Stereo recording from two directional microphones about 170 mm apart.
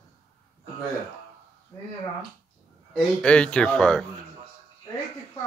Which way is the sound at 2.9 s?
5° left (ahead or behind).